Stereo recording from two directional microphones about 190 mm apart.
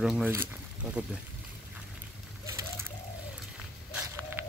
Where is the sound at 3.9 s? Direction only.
10° right (ahead or behind).